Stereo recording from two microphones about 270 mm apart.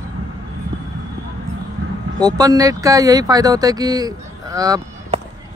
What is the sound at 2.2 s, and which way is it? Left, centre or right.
Speech, centre.